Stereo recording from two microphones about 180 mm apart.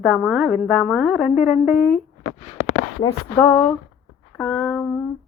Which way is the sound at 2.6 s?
45° left (ahead or behind).